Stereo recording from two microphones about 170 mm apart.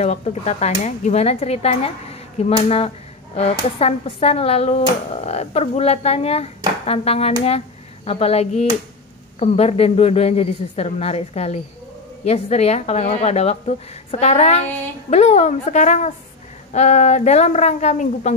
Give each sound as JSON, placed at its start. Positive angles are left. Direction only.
{"t": 0.0, "sound": "a woman's voice", "side_deg": 40}